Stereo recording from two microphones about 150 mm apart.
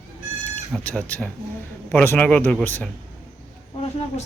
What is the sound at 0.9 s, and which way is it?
Speech, 10° left (ahead or behind).